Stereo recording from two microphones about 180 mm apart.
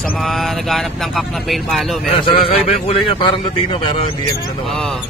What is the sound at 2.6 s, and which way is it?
Speech, 30° left (ahead or behind).